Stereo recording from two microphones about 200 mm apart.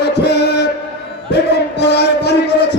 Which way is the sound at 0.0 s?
55° left (ahead or behind).